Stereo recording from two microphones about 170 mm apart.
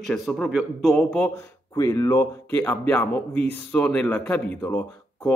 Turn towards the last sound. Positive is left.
turn(degrees=10)  # may be behind; listen again after turning